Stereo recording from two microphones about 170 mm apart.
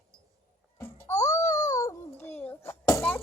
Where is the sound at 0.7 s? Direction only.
15° left (ahead or behind).